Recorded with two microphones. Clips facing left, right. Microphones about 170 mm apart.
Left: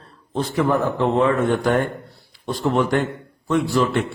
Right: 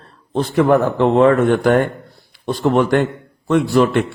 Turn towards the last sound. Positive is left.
turn(degrees=-60)  # may be behind; listen again after turning